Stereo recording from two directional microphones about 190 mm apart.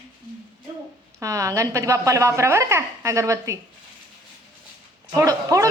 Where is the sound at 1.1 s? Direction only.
15° right (ahead or behind).